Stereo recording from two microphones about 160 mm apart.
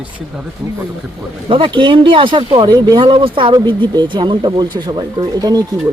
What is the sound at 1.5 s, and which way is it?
Speech, 30° right (ahead or behind).